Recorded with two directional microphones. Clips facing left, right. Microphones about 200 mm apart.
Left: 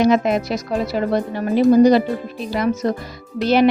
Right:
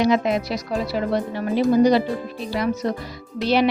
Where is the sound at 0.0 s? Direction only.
50° left (ahead or behind).